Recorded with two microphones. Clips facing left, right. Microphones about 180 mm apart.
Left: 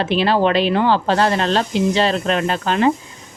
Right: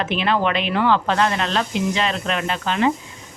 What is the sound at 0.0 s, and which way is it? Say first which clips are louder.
Speech: left 4 dB; 35° left (ahead or behind).